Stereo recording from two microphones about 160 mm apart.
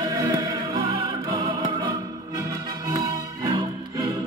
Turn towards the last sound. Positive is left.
turn(degrees=-20)  # may be behind; listen again after turning